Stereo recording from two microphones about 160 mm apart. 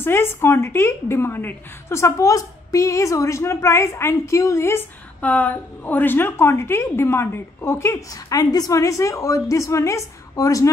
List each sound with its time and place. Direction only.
0.0 s a woman's voice: 15° left (ahead or behind)